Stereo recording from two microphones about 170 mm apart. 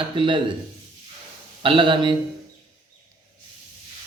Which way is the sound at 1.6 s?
30° right (ahead or behind).